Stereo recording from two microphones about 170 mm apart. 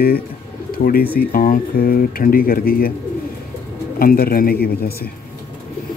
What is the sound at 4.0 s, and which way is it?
Speech, 60° left (ahead or behind).